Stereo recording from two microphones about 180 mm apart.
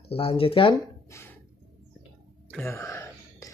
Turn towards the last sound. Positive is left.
turn(degrees=15)  # may be behind; listen again after turning